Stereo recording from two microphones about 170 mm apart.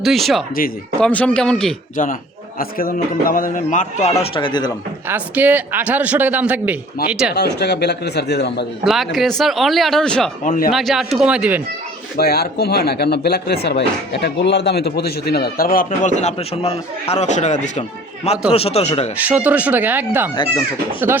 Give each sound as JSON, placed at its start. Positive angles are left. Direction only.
{"t": 0.0, "sound": "speech", "side_deg": 0}
{"t": 2.0, "sound": "a man's voice", "side_deg": 50}
{"t": 4.2, "sound": "speech", "side_deg": 30}
{"t": 5.0, "sound": "a man's voice", "side_deg": -10}
{"t": 7.3, "sound": "speech", "side_deg": 75}
{"t": 8.8, "sound": "speech", "side_deg": 0}
{"t": 10.4, "sound": "a man's voice", "side_deg": 55}
{"t": 10.7, "sound": "speech", "side_deg": 0}
{"t": 12.1, "sound": "a man's voice", "side_deg": 65}
{"t": 19.1, "sound": "a man's voice", "side_deg": -10}